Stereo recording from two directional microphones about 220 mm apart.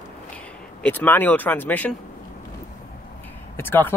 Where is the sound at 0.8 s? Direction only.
10° left (ahead or behind).